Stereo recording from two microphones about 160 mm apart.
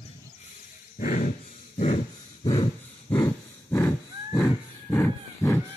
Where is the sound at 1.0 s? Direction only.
55° left (ahead or behind).